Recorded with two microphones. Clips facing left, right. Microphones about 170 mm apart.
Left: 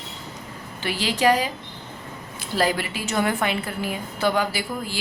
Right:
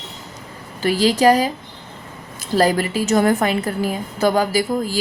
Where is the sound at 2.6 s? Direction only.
40° right (ahead or behind).